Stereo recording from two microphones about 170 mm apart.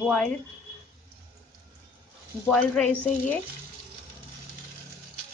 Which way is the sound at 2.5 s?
5° left (ahead or behind).